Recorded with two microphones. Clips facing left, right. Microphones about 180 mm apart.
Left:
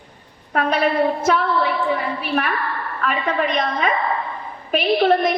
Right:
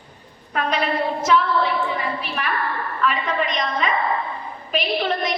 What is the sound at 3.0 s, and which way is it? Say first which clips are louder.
A woman's voice: left 2 dB; 50° left (ahead or behind).